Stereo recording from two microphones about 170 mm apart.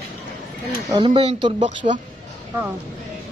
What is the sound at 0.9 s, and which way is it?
Speech, 30° right (ahead or behind).